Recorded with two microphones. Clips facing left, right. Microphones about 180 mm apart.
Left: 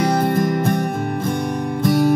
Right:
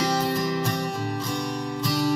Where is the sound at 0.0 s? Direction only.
55° left (ahead or behind).